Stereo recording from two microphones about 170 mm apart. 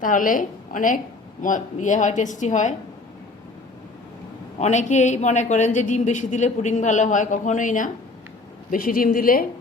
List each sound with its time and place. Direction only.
0.0 s a man's voice: 50° left (ahead or behind)
4.6 s a man's voice: 45° left (ahead or behind)